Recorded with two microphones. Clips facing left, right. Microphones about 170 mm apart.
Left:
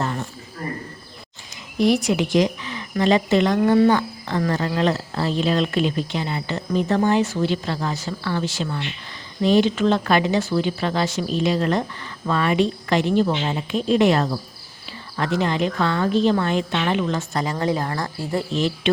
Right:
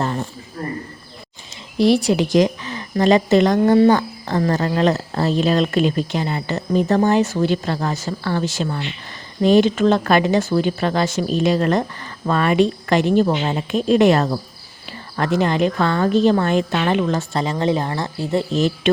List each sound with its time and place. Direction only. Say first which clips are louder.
0.0 s cricket: right 3 dB; 30° right (ahead or behind)
1.8 s speech: right 3 dB; 30° right (ahead or behind)
17.3 s speech: right 3 dB; 25° right (ahead or behind)
18.5 s speech: right 4 dB; 40° right (ahead or behind)